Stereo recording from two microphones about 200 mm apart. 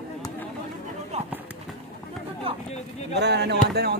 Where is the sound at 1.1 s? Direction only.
35° right (ahead or behind).